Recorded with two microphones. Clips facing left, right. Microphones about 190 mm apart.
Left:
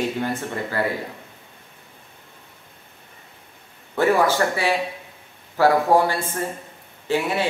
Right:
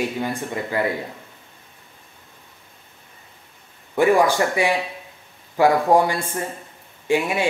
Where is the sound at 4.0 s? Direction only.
15° right (ahead or behind).